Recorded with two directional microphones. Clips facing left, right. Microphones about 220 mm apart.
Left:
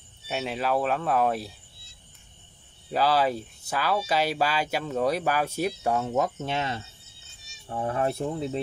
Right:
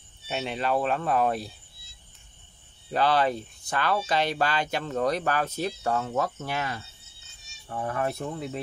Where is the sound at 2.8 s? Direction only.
5° left (ahead or behind).